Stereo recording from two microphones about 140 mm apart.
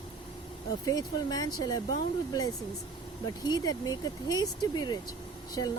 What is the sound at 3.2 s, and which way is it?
Speech, 30° left (ahead or behind).